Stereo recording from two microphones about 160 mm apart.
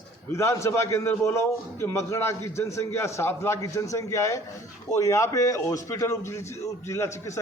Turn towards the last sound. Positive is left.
turn(degrees=20)  # may be behind; listen again after turning